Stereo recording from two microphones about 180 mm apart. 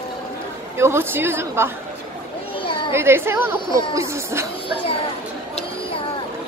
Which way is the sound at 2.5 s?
30° left (ahead or behind).